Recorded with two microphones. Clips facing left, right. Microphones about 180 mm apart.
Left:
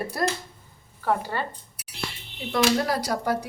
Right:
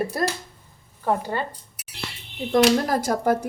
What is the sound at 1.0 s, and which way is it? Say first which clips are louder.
Speech: right 2 dB; 20° right (ahead or behind).